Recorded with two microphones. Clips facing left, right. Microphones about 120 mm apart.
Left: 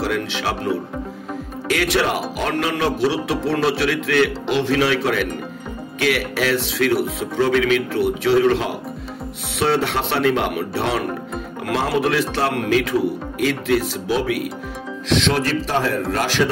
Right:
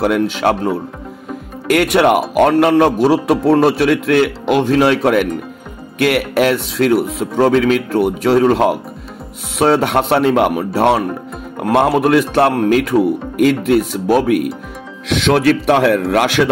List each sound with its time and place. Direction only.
0.0 s speech: 50° right (ahead or behind); by 16.4 s 65° right (ahead or behind)